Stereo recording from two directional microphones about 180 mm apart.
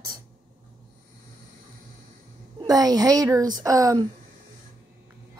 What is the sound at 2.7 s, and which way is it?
A woman's voice, 20° right (ahead or behind).